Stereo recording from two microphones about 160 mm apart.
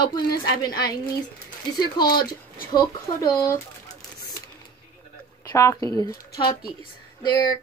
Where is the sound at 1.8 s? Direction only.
25° left (ahead or behind).